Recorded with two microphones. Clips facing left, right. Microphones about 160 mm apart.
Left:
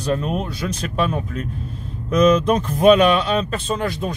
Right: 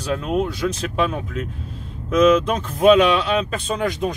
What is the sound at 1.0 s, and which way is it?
Speech, 5° right (ahead or behind).